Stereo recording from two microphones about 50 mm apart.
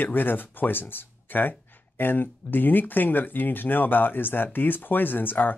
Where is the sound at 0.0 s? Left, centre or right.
Left.